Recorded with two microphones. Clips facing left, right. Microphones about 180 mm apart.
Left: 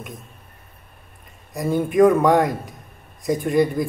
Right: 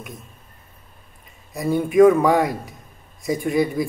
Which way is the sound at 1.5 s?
Centre (ahead or behind).